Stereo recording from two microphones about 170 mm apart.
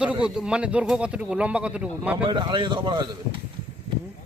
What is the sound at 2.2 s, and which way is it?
Speech, 25° right (ahead or behind).